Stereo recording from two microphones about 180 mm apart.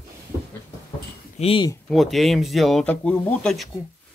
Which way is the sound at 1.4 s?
30° left (ahead or behind).